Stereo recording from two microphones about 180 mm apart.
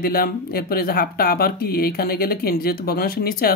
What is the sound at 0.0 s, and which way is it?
Speech, 55° left (ahead or behind).